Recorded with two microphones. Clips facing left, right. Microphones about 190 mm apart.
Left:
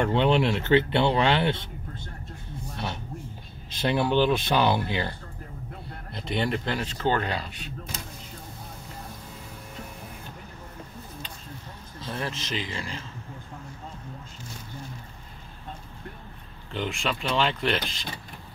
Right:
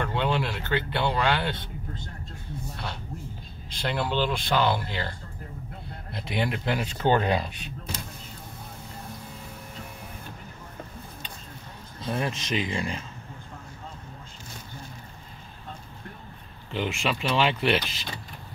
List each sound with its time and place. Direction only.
0.0 s speech: 20° left (ahead or behind)
3.8 s speech: 15° left (ahead or behind)
6.1 s speech: 5° right (ahead or behind)
12.1 s speech: 15° right (ahead or behind)
16.7 s speech: 5° right (ahead or behind)